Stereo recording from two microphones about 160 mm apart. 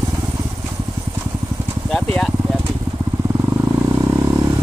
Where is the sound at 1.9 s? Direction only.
5° left (ahead or behind).